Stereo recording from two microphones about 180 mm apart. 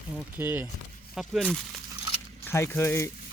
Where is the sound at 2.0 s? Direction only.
30° left (ahead or behind).